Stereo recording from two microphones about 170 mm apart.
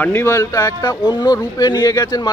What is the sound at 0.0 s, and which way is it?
Speech, 15° left (ahead or behind).